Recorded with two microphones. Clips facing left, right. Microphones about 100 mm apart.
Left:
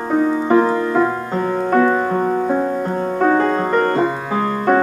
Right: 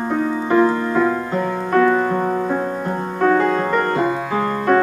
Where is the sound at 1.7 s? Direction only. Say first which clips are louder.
Right 1 dB; 20° left (ahead or behind).